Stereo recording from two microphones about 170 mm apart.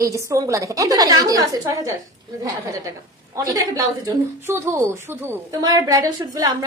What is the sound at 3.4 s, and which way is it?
A woman's voice, 20° right (ahead or behind).